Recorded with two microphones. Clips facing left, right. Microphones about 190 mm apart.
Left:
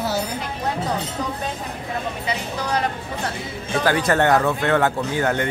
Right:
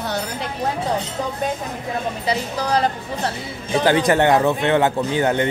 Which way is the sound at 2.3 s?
35° right (ahead or behind).